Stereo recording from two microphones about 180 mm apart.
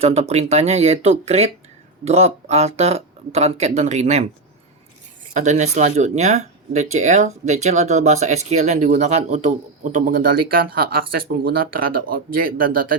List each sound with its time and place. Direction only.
0.0 s speech: 35° right (ahead or behind)
5.3 s a man's voice: 40° right (ahead or behind)